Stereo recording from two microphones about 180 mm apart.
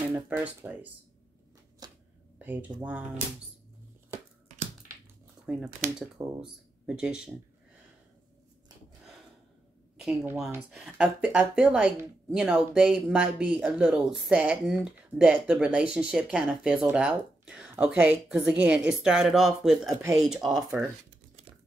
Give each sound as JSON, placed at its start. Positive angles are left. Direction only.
{"t": 0.1, "sound": "speech", "side_deg": -10}
{"t": 1.8, "sound": "a sound", "side_deg": -20}
{"t": 2.3, "sound": "speech", "side_deg": -10}
{"t": 5.5, "sound": "a woman's voice", "side_deg": -5}
{"t": 6.1, "sound": "speech", "side_deg": -20}
{"t": 6.4, "sound": "speech", "side_deg": -5}
{"t": 9.9, "sound": "a woman's voice", "side_deg": 0}